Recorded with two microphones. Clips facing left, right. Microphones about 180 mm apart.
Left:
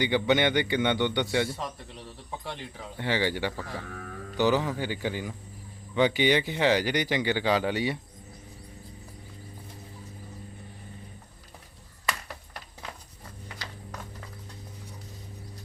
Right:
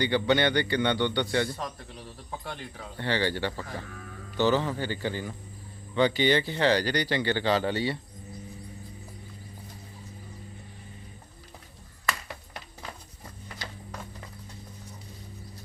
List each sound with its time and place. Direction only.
0.0 s speech: 15° left (ahead or behind)
1.6 s speech: centre (ahead or behind)
3.0 s speech: 15° left (ahead or behind)